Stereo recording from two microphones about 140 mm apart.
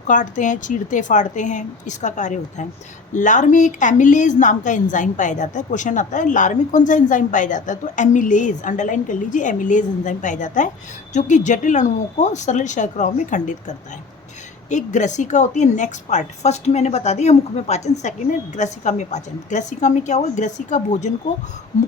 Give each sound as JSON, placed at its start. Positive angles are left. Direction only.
{"t": 0.1, "sound": "a woman's voice", "side_deg": 65}